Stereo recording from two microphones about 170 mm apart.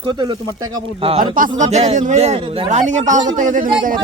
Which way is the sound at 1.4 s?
50° right (ahead or behind).